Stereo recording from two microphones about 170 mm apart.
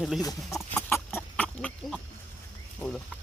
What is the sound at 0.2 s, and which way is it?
Speech, 20° left (ahead or behind).